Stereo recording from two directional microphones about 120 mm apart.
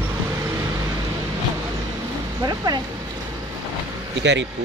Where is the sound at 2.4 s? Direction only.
30° right (ahead or behind).